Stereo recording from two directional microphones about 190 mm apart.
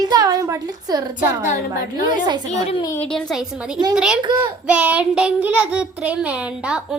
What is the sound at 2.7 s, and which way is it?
Speech, 25° left (ahead or behind).